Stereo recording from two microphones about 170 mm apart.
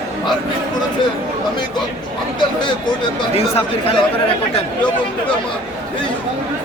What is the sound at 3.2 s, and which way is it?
Speech, 35° left (ahead or behind).